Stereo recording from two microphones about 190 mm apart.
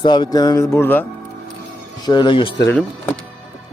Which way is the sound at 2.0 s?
25° left (ahead or behind).